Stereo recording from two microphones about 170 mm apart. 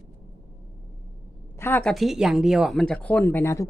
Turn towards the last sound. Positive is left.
turn(degrees=15)  # may be behind; listen again after turning